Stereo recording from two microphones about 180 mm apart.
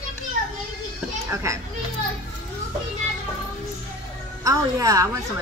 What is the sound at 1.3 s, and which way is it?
Speech, 15° right (ahead or behind).